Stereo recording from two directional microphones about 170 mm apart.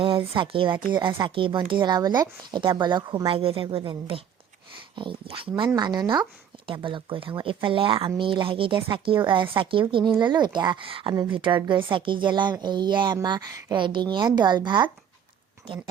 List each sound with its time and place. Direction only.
0.0 s speech: 30° right (ahead or behind)